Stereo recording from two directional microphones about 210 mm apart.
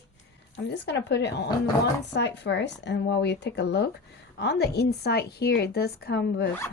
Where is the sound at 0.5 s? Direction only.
55° left (ahead or behind).